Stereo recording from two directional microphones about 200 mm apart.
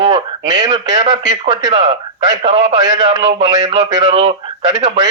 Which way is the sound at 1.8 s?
35° right (ahead or behind).